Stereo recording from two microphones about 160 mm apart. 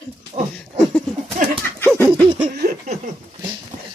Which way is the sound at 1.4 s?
55° right (ahead or behind).